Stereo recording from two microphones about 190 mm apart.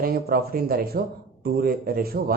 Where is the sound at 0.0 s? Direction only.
50° right (ahead or behind).